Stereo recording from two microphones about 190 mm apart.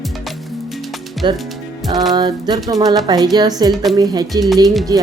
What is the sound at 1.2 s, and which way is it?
Speech, 25° right (ahead or behind).